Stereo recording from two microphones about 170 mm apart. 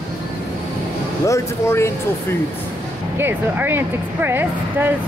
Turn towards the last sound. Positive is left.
turn(degrees=-10)  # may be behind; listen again after turning